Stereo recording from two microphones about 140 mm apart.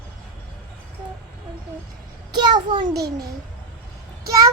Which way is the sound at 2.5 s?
35° right (ahead or behind).